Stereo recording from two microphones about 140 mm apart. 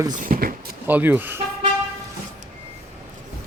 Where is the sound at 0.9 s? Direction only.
10° right (ahead or behind).